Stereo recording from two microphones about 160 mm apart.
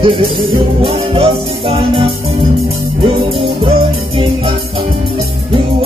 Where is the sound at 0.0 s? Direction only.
30° right (ahead or behind).